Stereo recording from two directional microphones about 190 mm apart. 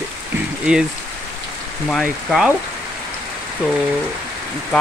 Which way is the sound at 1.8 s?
Centre (ahead or behind).